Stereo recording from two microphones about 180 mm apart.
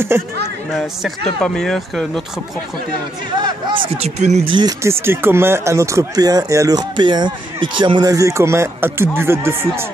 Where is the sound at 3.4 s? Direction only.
30° right (ahead or behind).